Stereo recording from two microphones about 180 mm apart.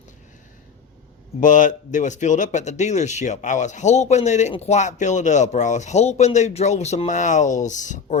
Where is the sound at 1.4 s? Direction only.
45° left (ahead or behind).